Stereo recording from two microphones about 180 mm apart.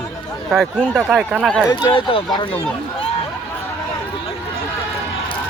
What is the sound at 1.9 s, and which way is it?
Speech, 25° left (ahead or behind).